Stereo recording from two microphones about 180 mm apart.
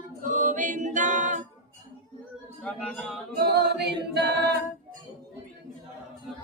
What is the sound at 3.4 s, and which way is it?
Singing, 65° right (ahead or behind).